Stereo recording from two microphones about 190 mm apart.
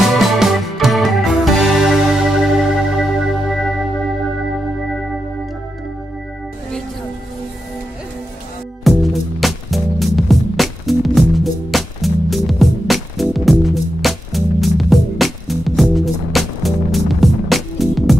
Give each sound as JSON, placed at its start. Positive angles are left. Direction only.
{"t": 0.0, "sound": "music", "side_deg": 0}
{"t": 8.8, "sound": "music", "side_deg": 0}